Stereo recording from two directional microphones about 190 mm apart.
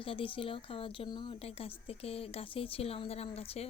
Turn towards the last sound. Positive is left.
turn(degrees=30)  # may be behind; listen again after turning